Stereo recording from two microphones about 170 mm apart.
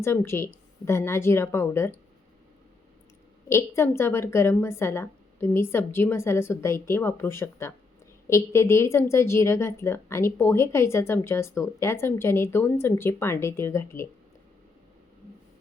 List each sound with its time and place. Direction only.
0.0 s a woman's voice: 15° left (ahead or behind)
3.5 s a woman's voice: 15° left (ahead or behind)